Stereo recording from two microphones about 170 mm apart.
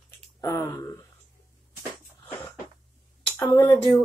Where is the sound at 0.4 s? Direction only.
20° left (ahead or behind).